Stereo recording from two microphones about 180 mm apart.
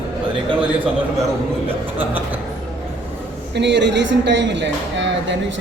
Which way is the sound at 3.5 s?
75° right (ahead or behind).